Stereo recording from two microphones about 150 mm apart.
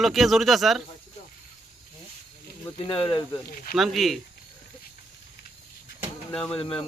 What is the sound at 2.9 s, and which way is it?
Speech, 35° left (ahead or behind).